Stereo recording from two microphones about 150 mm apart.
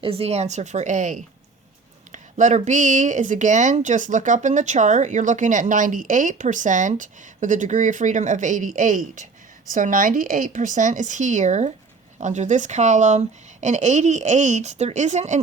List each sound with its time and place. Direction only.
0.0 s speech: 40° right (ahead or behind)